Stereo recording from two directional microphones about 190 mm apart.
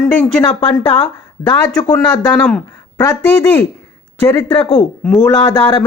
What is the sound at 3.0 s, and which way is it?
Speech, 15° left (ahead or behind).